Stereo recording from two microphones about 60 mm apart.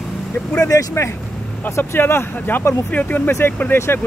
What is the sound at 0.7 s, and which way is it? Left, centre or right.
Speech, left.